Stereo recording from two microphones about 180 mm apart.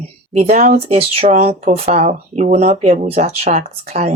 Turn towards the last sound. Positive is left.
turn(degrees=-35)  # may be behind; listen again after turning